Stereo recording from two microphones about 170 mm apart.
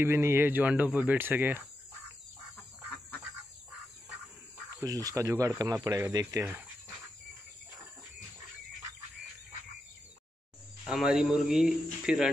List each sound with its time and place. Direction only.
0.0 s speech: 15° right (ahead or behind)
4.8 s speech: 20° right (ahead or behind)
10.8 s speech: centre (ahead or behind)